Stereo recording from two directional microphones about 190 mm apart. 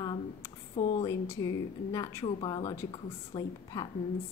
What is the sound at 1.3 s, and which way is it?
A woman's voice, 15° left (ahead or behind).